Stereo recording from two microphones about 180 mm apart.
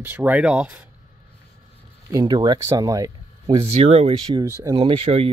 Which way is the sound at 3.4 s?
35° right (ahead or behind).